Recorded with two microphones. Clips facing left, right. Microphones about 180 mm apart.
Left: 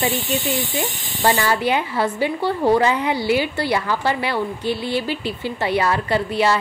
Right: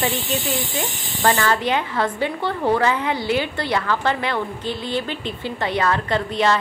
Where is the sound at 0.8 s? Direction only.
15° left (ahead or behind).